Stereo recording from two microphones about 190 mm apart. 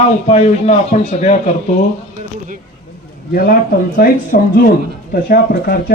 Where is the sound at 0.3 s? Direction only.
35° left (ahead or behind).